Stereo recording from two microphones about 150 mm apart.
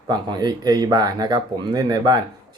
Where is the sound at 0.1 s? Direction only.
30° right (ahead or behind).